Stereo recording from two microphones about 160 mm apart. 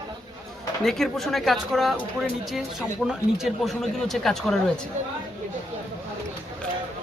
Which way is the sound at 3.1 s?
5° right (ahead or behind).